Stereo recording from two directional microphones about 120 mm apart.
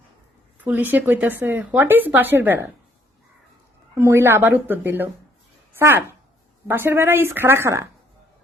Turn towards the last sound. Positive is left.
turn(degrees=-20)  # may be behind; listen again after turning